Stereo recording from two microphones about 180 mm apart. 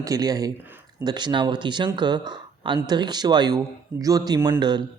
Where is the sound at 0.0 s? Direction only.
20° right (ahead or behind).